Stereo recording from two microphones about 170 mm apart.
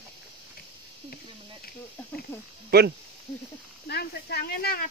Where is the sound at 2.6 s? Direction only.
70° right (ahead or behind).